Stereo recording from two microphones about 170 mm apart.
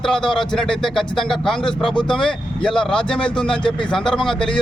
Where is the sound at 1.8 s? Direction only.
30° left (ahead or behind).